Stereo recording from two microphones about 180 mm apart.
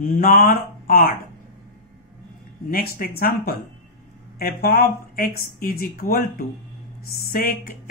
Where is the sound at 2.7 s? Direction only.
55° left (ahead or behind).